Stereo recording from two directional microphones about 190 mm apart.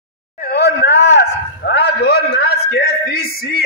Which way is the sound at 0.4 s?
60° left (ahead or behind).